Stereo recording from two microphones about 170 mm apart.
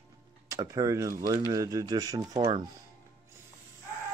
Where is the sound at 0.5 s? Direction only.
20° right (ahead or behind).